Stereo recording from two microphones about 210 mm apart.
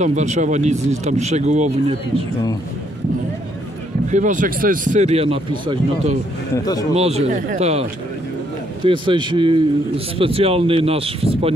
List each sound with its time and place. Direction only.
0.0 s speech: 35° right (ahead or behind)
4.1 s speech: 35° right (ahead or behind)
6.5 s speech: 15° left (ahead or behind)
7.0 s speech: 30° right (ahead or behind)
8.8 s speech: 25° right (ahead or behind)